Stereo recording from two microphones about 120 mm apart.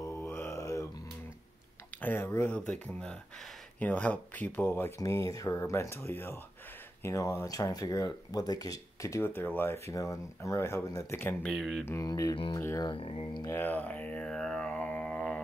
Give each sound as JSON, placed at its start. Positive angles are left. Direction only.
{"t": 0.0, "sound": "a sound", "side_deg": 20}
{"t": 2.0, "sound": "speech", "side_deg": 15}
{"t": 11.4, "sound": "speech", "side_deg": 0}
{"t": 11.8, "sound": "speech", "side_deg": 20}
{"t": 12.8, "sound": "speech", "side_deg": 50}
{"t": 13.4, "sound": "a sound", "side_deg": 20}